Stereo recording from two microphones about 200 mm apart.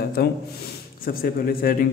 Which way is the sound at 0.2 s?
50° left (ahead or behind).